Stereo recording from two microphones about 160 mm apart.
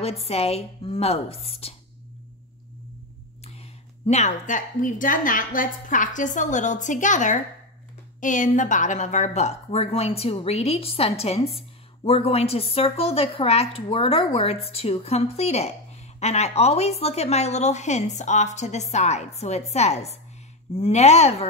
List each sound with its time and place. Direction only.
0.0 s a woman's voice: 40° left (ahead or behind)
4.0 s a woman's voice: 45° left (ahead or behind)